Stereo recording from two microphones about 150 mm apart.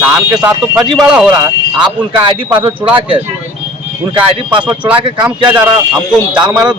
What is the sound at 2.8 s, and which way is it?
Speech, 20° right (ahead or behind).